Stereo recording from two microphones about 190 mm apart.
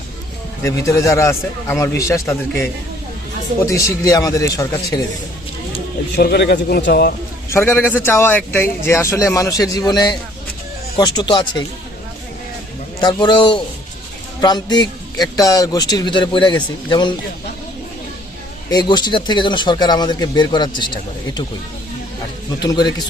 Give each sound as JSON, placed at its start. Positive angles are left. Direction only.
{"t": 0.6, "sound": "a man's voice", "side_deg": 15}
{"t": 3.8, "sound": "a man's voice", "side_deg": 20}
{"t": 6.1, "sound": "a man's voice", "side_deg": 60}
{"t": 7.5, "sound": "a man's voice", "side_deg": 10}
{"t": 13.0, "sound": "a man's voice", "side_deg": 25}
{"t": 18.7, "sound": "a man's voice", "side_deg": 20}
{"t": 22.6, "sound": "a man's voice", "side_deg": 20}